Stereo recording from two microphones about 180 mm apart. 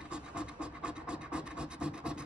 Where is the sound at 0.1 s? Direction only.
5° right (ahead or behind).